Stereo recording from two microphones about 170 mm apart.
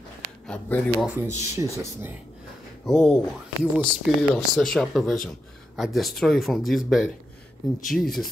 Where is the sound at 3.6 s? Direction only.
10° right (ahead or behind).